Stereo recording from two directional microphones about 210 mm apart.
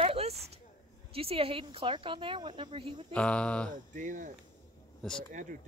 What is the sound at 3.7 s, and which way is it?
Speech, 40° right (ahead or behind).